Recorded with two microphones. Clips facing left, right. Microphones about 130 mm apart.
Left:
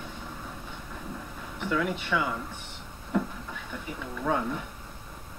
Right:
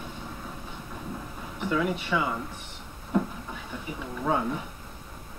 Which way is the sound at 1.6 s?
10° right (ahead or behind).